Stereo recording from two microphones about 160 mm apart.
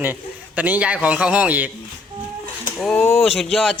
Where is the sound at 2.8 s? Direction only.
Centre (ahead or behind).